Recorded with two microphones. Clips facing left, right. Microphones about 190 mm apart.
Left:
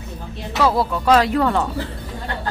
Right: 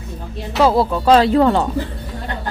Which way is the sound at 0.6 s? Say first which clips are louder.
Right 4 dB; 30° right (ahead or behind).